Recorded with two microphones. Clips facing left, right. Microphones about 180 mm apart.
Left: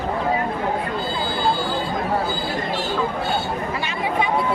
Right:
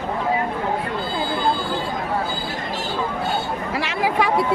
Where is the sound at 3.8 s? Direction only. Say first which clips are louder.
Right 4 dB; 85° right.